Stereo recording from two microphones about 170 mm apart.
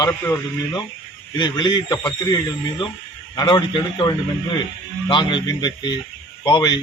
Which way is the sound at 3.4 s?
25° left (ahead or behind).